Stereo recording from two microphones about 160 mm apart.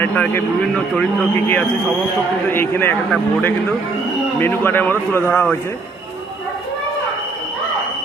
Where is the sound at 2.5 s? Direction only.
15° left (ahead or behind).